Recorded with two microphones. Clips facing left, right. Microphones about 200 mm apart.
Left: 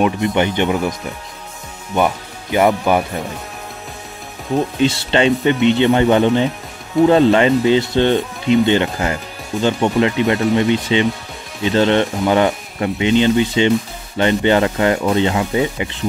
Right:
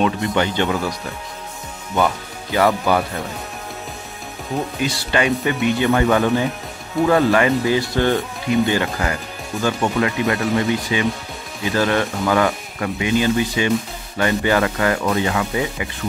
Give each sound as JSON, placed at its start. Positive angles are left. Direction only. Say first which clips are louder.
{"t": 0.0, "sound": "speech", "louder": "left 3 dB", "side_deg": 20}
{"t": 2.0, "sound": "speech", "louder": "left 2 dB", "side_deg": 20}
{"t": 4.7, "sound": "speech", "louder": "left 4 dB", "side_deg": 25}